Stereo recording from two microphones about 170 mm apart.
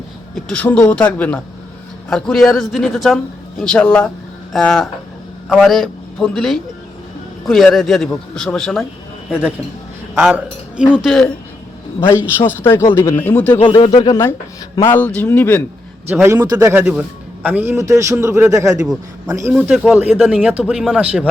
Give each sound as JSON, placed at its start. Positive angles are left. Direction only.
{"t": 0.3, "sound": "a man's voice", "side_deg": 5}
{"t": 10.2, "sound": "speech", "side_deg": -10}
{"t": 12.0, "sound": "a man's voice", "side_deg": 15}
{"t": 13.6, "sound": "a man's voice", "side_deg": 30}
{"t": 16.2, "sound": "a man's voice", "side_deg": -15}
{"t": 16.8, "sound": "a man's voice", "side_deg": -5}
{"t": 19.5, "sound": "speech", "side_deg": -5}